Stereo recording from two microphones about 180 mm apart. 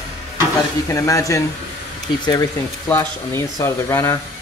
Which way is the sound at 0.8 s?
20° left (ahead or behind).